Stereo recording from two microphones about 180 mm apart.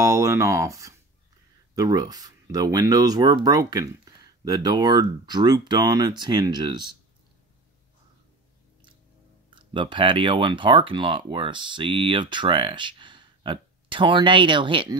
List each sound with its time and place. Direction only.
0.0 s speech: 15° right (ahead or behind)
9.6 s speech: 25° right (ahead or behind)